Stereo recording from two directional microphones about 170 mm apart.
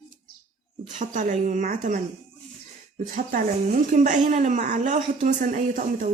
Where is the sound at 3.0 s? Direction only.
50° right (ahead or behind).